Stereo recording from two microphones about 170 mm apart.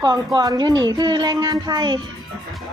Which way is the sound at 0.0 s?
25° right (ahead or behind).